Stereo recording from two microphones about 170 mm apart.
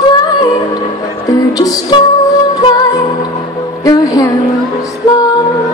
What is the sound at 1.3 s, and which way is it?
Music, 20° left (ahead or behind).